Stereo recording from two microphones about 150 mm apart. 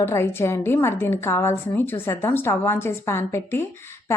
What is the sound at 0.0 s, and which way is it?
A woman's voice, 15° left (ahead or behind).